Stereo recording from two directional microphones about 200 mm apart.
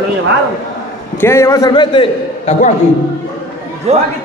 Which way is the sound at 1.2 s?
15° left (ahead or behind).